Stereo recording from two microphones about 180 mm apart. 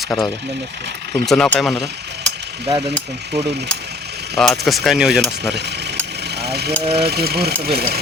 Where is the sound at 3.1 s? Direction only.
70° right (ahead or behind).